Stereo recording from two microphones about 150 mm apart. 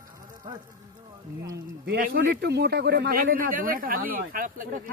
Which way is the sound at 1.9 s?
80° right.